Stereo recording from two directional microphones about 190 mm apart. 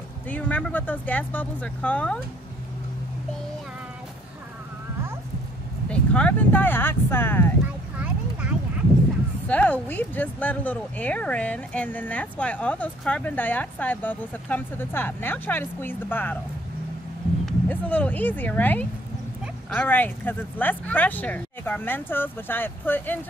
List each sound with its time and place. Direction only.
0.3 s speech: 10° left (ahead or behind)
5.9 s speech: 5° left (ahead or behind)
7.6 s a sound: 5° right (ahead or behind)
9.5 s speech: 5° left (ahead or behind)
17.5 s speech: 10° left (ahead or behind)